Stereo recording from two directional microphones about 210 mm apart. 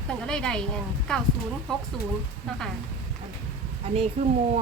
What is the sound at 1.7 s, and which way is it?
Speech, 5° left (ahead or behind).